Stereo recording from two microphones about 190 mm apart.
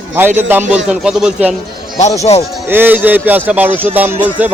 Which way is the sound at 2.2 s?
35° left (ahead or behind).